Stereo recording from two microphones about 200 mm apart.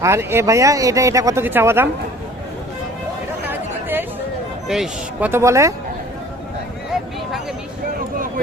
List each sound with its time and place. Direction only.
0.0 s speech: 15° right (ahead or behind)
3.4 s chatter: 10° right (ahead or behind)
4.7 s speech: 5° right (ahead or behind)